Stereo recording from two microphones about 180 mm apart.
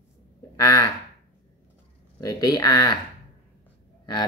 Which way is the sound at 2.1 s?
20° left (ahead or behind).